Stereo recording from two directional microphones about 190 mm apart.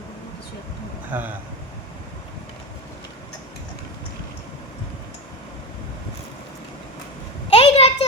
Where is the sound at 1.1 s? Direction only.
10° right (ahead or behind).